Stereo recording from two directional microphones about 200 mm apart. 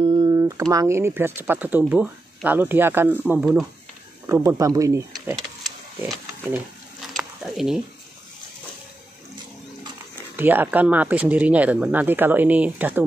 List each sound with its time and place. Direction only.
0.0 s speech: 25° right (ahead or behind); by 3.6 s 5° right (ahead or behind)
4.3 s speech: 15° right (ahead or behind)
5.3 s wild animals: centre (ahead or behind)
7.2 s a sound: 5° right (ahead or behind)
10.3 s speech: 10° right (ahead or behind)